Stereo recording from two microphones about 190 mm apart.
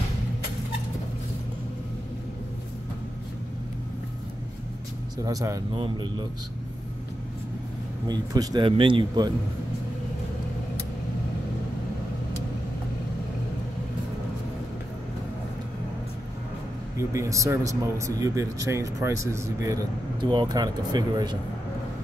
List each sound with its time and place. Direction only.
5.2 s speech: 20° right (ahead or behind)
8.1 s speech: 20° right (ahead or behind)
17.1 s speech: 15° right (ahead or behind)